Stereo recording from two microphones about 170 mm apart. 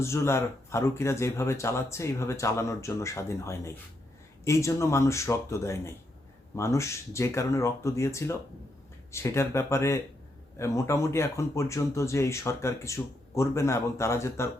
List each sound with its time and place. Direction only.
0.0 s speech: 15° left (ahead or behind)